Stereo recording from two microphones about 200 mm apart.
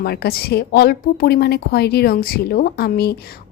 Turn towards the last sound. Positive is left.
turn(degrees=50)  # may be behind; listen again after turning